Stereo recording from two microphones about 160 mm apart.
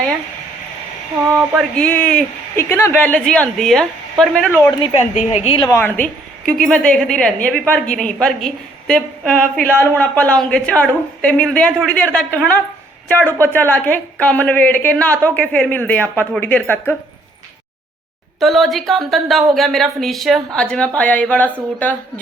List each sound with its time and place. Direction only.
1.5 s a woman's voice: 5° left (ahead or behind)
5.1 s a woman's voice: 45° left (ahead or behind)
5.5 s a woman's voice: 25° left (ahead or behind)
5.8 s a woman's voice: 10° left (ahead or behind)
18.3 s a woman's voice: centre (ahead or behind)